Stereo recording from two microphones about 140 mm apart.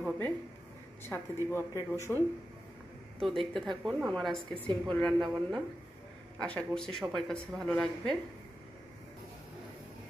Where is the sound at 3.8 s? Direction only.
Centre (ahead or behind).